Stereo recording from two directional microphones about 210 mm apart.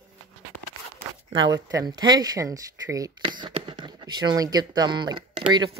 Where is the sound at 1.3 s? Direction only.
20° right (ahead or behind).